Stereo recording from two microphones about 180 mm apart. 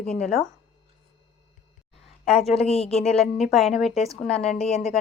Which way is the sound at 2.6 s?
35° left (ahead or behind).